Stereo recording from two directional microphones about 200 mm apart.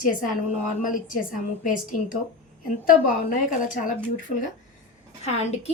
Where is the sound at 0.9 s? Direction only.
45° left (ahead or behind).